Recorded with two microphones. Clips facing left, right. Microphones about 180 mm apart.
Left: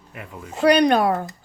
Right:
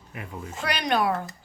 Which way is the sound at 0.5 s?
40° left (ahead or behind).